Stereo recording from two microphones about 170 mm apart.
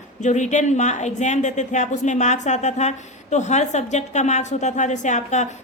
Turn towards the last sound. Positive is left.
turn(degrees=45)  # may be behind; listen again after turning